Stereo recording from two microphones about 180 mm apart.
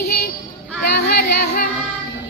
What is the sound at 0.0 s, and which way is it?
Children playing, 60° left (ahead or behind).